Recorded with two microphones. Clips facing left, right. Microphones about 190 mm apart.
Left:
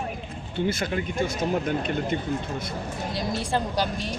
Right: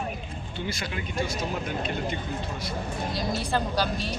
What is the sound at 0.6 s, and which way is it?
Speech, 50° left (ahead or behind).